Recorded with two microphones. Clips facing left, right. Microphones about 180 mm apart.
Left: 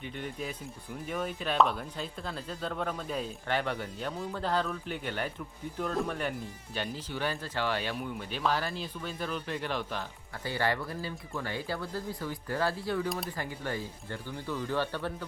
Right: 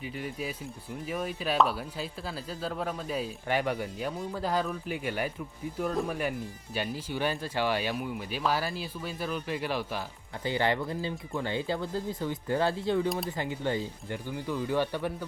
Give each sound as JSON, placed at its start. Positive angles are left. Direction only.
{"t": 0.0, "sound": "speech", "side_deg": -5}
{"t": 10.4, "sound": "speech", "side_deg": -20}